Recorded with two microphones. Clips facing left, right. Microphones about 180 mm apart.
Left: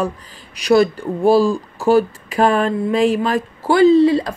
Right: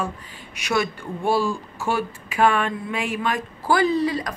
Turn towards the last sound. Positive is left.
turn(degrees=25)  # may be behind; listen again after turning